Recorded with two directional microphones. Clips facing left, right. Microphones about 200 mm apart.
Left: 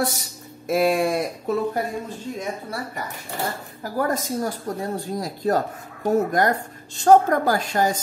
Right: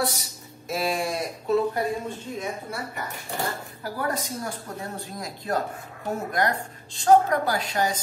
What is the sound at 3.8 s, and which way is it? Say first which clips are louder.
A woman's voice: left 5 dB; 45° left (ahead or behind).